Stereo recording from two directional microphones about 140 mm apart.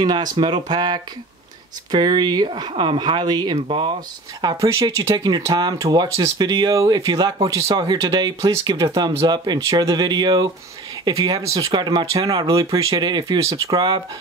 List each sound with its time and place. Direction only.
0.0 s speech: 30° right (ahead or behind)
3.5 s speech: 45° right (ahead or behind)
4.4 s speech: 25° right (ahead or behind)